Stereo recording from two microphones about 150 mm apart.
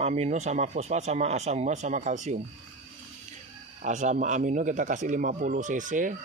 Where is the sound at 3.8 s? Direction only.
55° right (ahead or behind).